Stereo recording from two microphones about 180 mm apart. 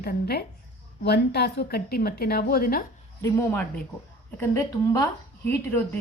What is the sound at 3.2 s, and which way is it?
A woman's voice, 15° left (ahead or behind).